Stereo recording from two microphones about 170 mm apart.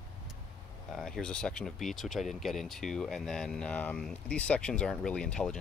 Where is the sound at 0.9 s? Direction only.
Centre (ahead or behind).